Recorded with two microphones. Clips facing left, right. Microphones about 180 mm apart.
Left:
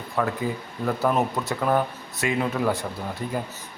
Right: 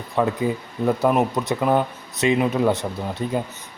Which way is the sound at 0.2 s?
20° right (ahead or behind).